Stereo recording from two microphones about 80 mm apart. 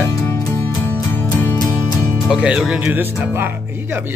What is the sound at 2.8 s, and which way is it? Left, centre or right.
Speech, right.